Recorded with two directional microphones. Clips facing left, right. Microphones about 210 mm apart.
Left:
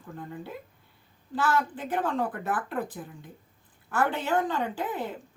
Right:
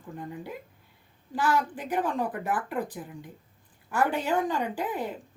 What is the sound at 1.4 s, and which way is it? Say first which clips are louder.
Speech: even; 15° right (ahead or behind).